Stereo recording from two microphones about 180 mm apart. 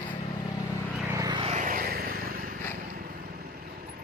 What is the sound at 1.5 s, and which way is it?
Vehicle, 45° right (ahead or behind).